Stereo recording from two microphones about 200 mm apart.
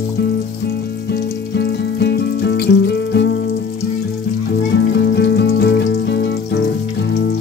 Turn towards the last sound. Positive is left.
turn(degrees=60)  # may be behind; listen again after turning